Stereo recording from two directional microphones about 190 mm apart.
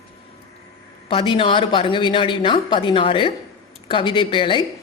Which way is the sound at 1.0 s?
25° left (ahead or behind).